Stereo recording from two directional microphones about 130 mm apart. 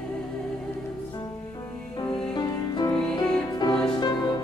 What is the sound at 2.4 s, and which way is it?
Music, 35° left (ahead or behind).